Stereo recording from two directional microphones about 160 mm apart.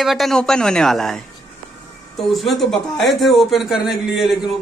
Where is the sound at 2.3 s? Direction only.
Centre (ahead or behind).